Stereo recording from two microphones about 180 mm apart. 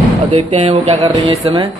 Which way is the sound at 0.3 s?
30° right (ahead or behind).